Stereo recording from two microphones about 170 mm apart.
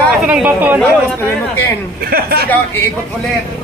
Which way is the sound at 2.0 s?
65° right (ahead or behind).